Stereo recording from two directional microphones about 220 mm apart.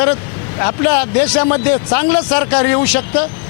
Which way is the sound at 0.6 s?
15° left (ahead or behind).